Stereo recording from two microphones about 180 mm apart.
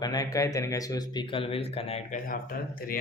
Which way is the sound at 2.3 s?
55° left (ahead or behind).